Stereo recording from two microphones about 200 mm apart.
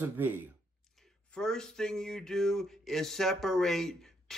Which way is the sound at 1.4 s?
5° left (ahead or behind).